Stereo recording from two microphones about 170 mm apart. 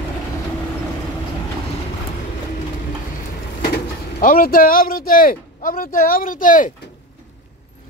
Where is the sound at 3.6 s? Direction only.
60° left (ahead or behind).